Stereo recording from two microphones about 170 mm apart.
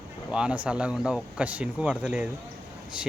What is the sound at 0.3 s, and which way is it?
Speech, 5° right (ahead or behind).